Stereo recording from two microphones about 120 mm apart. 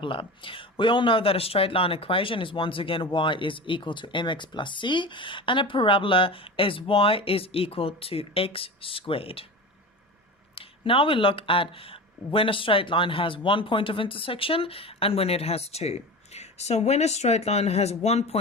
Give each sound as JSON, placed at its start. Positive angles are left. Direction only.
{"t": 0.0, "sound": "speech", "side_deg": 45}
{"t": 10.5, "sound": "speech", "side_deg": 50}